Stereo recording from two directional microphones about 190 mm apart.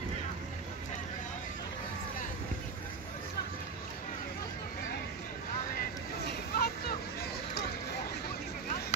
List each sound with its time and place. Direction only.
5.8 s hubbub: 55° left (ahead or behind)